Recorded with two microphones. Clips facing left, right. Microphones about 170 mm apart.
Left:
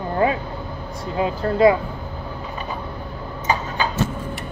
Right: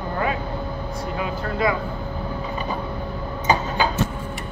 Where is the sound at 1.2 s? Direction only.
35° left (ahead or behind).